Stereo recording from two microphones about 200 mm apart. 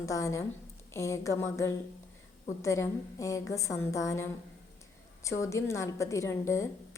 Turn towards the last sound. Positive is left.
turn(degrees=15)  # may be behind; listen again after turning